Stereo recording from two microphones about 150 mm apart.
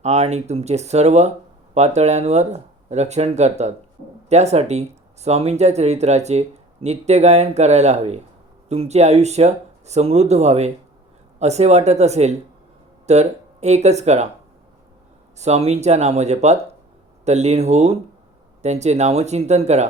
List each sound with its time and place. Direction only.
0.0 s speech: 45° right (ahead or behind)
15.4 s speech: 45° right (ahead or behind)